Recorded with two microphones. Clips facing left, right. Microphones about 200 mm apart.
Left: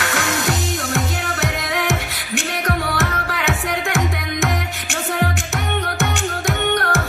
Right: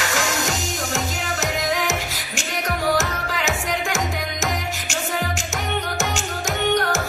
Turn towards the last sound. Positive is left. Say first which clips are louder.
# left 1 dB
turn(degrees=55)  # may be behind; listen again after turning